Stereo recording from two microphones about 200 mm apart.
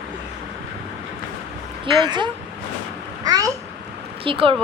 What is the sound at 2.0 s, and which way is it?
Speech, 20° right (ahead or behind).